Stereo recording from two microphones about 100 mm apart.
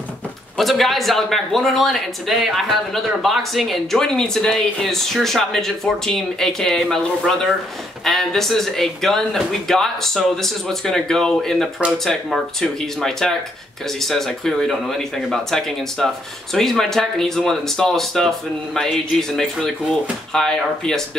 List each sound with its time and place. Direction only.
0.6 s a man's voice: centre (ahead or behind)